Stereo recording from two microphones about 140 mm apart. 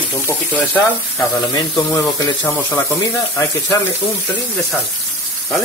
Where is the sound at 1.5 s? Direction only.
25° left (ahead or behind).